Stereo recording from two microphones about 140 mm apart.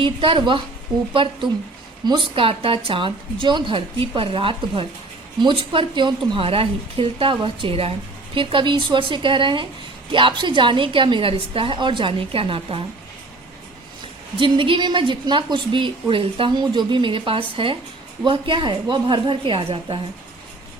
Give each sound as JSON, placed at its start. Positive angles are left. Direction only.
{"t": 0.0, "sound": "a woman's voice", "side_deg": -40}
{"t": 14.3, "sound": "a woman's voice", "side_deg": -40}